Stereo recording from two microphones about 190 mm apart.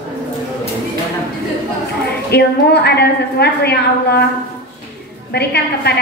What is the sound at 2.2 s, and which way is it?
A woman's voice, 60° left (ahead or behind).